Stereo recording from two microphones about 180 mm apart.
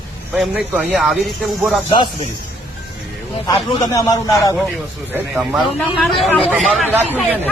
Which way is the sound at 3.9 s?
20° left (ahead or behind).